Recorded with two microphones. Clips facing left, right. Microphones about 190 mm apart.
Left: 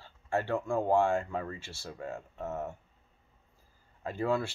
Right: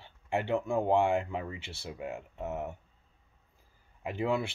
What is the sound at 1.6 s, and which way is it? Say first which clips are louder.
Speech: right 1 dB; 60° right (ahead or behind).